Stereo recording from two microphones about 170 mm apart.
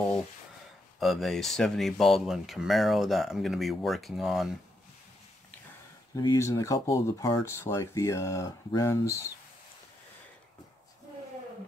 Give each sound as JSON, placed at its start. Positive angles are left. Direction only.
{"t": 0.9, "sound": "speech", "side_deg": 0}
{"t": 6.1, "sound": "speech", "side_deg": 20}